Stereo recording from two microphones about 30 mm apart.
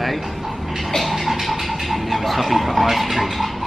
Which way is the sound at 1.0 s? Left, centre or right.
Centre.